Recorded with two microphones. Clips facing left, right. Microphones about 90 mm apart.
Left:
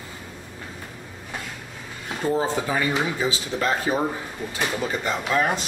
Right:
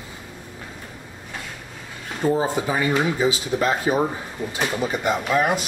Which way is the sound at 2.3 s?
15° right (ahead or behind).